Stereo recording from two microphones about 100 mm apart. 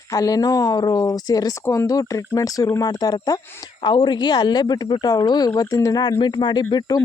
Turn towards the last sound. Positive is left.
turn(degrees=40)  # may be behind; listen again after turning